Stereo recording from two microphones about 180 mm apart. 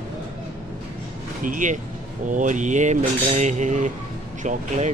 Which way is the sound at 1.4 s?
45° right (ahead or behind).